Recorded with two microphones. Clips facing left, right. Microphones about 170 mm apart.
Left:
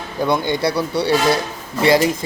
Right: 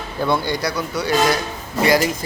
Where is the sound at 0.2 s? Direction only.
20° left (ahead or behind).